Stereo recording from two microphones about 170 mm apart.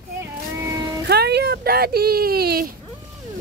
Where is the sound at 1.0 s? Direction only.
75° right (ahead or behind).